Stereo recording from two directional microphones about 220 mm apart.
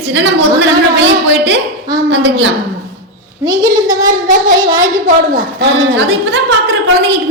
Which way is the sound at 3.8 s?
15° right (ahead or behind).